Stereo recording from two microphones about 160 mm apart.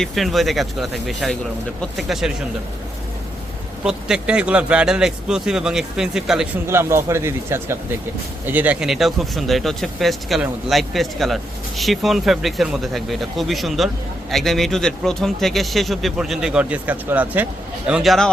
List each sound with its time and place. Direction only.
0.0 s speech: centre (ahead or behind)
3.8 s speech: 5° right (ahead or behind)
6.7 s speech: 15° right (ahead or behind); by 18.3 s centre (ahead or behind)